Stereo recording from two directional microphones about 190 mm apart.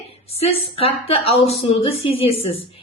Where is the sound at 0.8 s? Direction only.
30° left (ahead or behind).